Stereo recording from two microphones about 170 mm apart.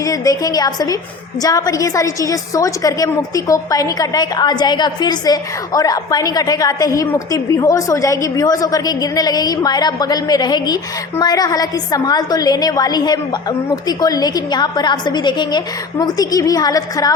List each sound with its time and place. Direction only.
0.0 s a woman's voice: 20° left (ahead or behind)